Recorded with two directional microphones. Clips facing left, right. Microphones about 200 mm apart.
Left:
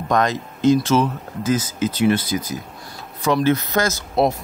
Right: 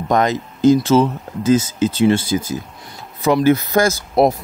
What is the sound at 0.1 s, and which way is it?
Speech, 25° right (ahead or behind).